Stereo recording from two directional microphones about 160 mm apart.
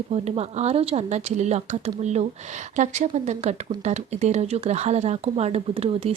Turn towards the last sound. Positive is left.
turn(degrees=-40)  # may be behind; listen again after turning